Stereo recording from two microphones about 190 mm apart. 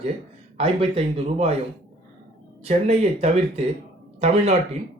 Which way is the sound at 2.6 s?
35° right (ahead or behind).